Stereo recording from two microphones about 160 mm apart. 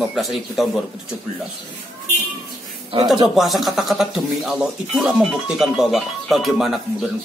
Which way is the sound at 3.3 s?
Centre (ahead or behind).